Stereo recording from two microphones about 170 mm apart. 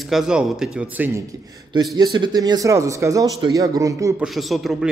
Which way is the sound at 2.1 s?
25° right (ahead or behind).